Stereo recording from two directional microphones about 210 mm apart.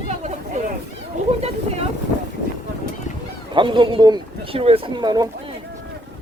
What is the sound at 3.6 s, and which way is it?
Speech, 25° right (ahead or behind).